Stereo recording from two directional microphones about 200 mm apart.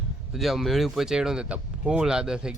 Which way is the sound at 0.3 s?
Centre (ahead or behind).